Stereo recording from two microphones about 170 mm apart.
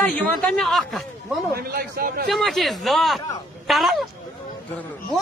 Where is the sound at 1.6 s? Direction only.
65° right (ahead or behind).